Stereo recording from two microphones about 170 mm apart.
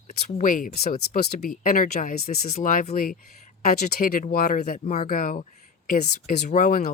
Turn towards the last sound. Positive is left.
turn(degrees=55)  # may be behind; listen again after turning